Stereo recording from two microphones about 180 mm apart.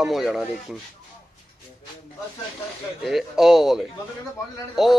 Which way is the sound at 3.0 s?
Centre (ahead or behind).